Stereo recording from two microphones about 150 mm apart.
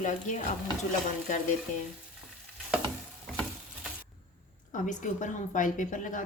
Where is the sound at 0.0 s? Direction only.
55° left (ahead or behind).